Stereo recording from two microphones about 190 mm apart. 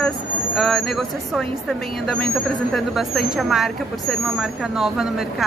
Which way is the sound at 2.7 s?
Centre (ahead or behind).